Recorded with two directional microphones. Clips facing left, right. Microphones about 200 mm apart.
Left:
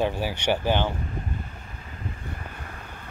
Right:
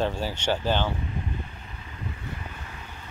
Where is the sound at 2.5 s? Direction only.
55° left (ahead or behind).